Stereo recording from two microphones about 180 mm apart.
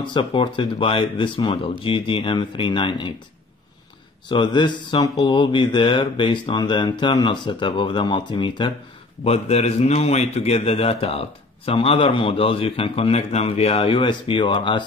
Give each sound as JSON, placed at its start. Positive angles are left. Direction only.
{"t": 0.0, "sound": "speech", "side_deg": 25}
{"t": 4.3, "sound": "a man's voice", "side_deg": 25}